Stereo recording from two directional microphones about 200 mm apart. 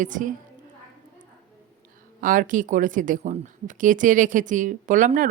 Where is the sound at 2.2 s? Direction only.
45° right (ahead or behind).